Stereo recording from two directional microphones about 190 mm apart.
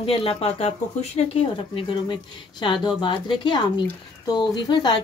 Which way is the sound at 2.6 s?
25° left (ahead or behind).